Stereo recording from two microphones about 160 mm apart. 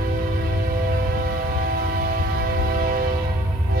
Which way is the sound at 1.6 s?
70° right (ahead or behind).